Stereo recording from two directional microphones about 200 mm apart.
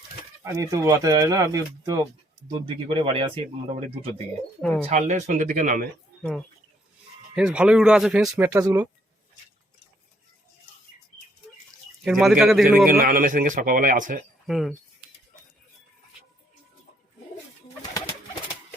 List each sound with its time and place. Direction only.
0.4 s speech: 15° right (ahead or behind)
4.9 s speech: 35° right (ahead or behind)
7.3 s speech: 5° right (ahead or behind)
8.5 s speech: 20° right (ahead or behind)
12.0 s speech: 5° right (ahead or behind)
13.0 s speech: 45° right (ahead or behind)
14.4 s speech: centre (ahead or behind)